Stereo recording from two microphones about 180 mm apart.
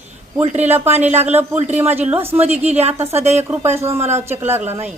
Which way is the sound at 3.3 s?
15° right (ahead or behind).